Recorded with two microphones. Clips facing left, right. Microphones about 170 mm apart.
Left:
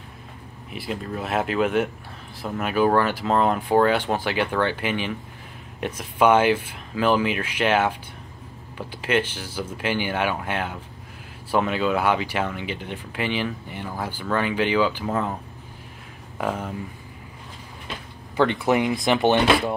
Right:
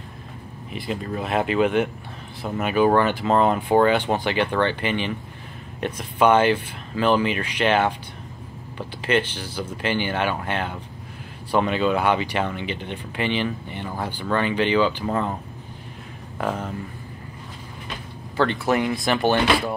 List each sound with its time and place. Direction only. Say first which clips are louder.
0.7 s speech: right 2 dB; centre (ahead or behind)
16.3 s speech: even; 10° left (ahead or behind)
18.3 s speech: left 1 dB; 15° left (ahead or behind)